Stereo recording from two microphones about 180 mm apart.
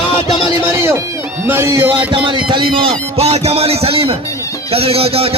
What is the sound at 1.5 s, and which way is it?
Speech, 15° right (ahead or behind).